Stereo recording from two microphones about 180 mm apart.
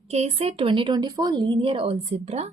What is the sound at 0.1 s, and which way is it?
A woman's voice, 35° right (ahead or behind).